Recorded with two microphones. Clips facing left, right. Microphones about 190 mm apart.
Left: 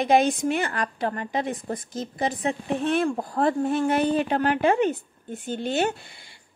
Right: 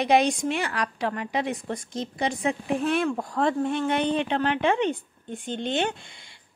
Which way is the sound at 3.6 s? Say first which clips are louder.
Left 2 dB; 5° left (ahead or behind).